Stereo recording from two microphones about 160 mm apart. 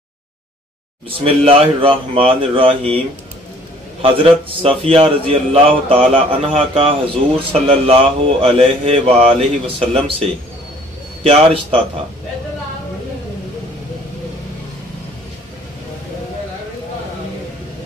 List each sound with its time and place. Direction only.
1.2 s a man's voice: 35° right (ahead or behind)
4.0 s a man's voice: 35° right (ahead or behind)
11.2 s a man's voice: 40° right (ahead or behind)